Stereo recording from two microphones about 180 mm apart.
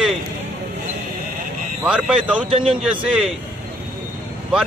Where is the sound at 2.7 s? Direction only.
5° right (ahead or behind).